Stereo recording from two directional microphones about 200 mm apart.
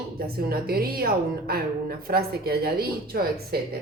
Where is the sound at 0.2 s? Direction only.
50° right (ahead or behind).